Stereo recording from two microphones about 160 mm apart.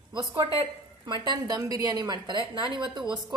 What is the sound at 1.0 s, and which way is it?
A woman's voice, 30° right (ahead or behind).